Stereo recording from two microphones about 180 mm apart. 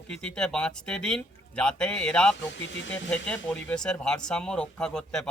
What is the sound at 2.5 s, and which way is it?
Speech, 90° left.